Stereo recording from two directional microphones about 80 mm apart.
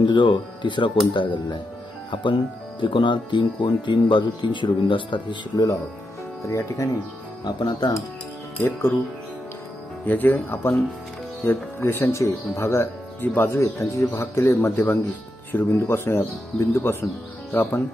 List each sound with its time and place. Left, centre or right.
0.0 s speech: left
6.4 s speech: left
7.4 s speech: left
8.6 s speech: left
10.0 s speech: left